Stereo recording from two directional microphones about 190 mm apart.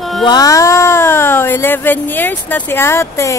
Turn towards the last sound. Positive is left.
turn(degrees=15)  # may be behind; listen again after turning